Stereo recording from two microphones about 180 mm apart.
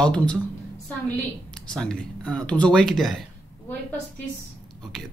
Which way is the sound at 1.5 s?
5° left (ahead or behind).